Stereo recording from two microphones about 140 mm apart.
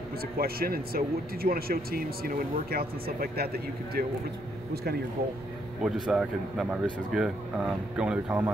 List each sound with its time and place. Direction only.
0.4 s speech: 90° right
5.8 s speech: 5° right (ahead or behind)